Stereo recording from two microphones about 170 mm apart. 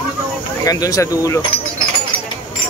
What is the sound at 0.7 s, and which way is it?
Speech, 20° left (ahead or behind).